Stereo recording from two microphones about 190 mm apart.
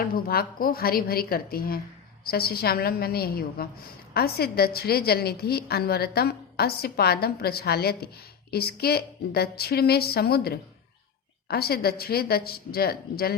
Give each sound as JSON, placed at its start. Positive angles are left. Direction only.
{"t": 0.0, "sound": "a woman's voice", "side_deg": 50}